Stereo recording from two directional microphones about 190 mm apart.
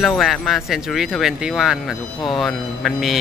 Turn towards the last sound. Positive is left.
turn(degrees=0)  # may be behind; listen again after turning